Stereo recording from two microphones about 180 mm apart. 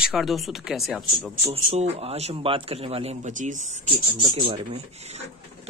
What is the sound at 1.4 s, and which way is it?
A man's voice, 30° right (ahead or behind).